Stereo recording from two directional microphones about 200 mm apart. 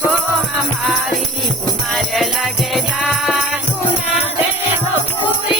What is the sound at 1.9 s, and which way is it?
Music, centre (ahead or behind).